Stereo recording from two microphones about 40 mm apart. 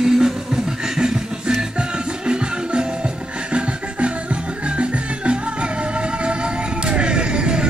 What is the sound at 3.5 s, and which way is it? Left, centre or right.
Music, right.